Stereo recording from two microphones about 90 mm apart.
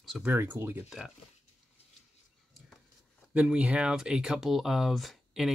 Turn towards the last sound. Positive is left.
turn(degrees=0)  # may be behind; listen again after turning